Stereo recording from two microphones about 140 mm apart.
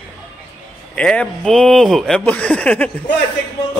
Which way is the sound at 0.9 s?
10° left (ahead or behind).